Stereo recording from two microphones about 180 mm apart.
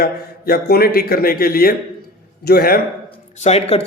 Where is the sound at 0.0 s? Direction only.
60° left (ahead or behind).